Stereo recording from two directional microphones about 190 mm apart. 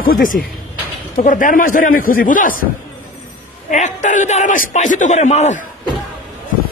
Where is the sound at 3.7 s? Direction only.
40° left (ahead or behind).